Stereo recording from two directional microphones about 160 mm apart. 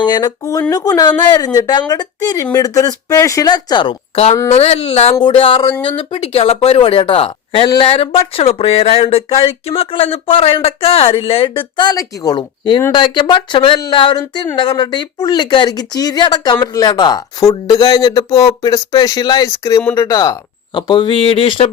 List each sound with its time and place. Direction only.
0.0 s a woman's voice: 25° left (ahead or behind)